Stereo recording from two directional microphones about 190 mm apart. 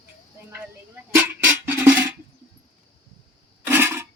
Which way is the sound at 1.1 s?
10° right (ahead or behind).